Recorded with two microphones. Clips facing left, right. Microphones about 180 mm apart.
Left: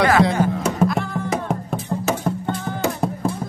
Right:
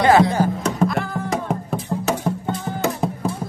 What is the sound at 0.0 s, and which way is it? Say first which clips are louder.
Music: right 2 dB; 25° right (ahead or behind).